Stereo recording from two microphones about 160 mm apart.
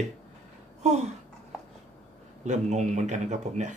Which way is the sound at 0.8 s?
45° right (ahead or behind).